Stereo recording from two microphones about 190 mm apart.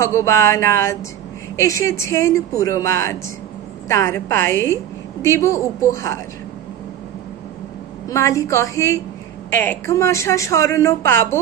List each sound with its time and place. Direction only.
0.0 s speech: 15° left (ahead or behind)
8.1 s speech: 15° left (ahead or behind)